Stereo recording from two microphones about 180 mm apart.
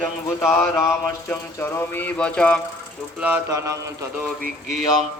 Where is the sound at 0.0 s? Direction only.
15° left (ahead or behind).